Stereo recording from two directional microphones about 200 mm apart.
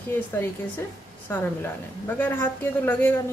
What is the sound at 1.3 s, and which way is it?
A woman's voice, 10° left (ahead or behind).